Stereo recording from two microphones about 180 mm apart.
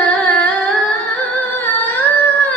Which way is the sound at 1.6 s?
10° left (ahead or behind).